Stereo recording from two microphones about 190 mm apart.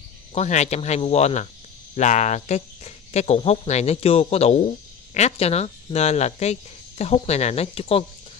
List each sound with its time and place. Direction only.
0.3 s speech: 35° left (ahead or behind)